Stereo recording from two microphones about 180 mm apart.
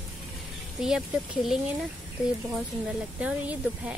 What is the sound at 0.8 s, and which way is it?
Speech, centre (ahead or behind).